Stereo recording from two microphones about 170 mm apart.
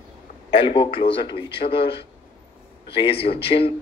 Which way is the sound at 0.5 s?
30° left (ahead or behind).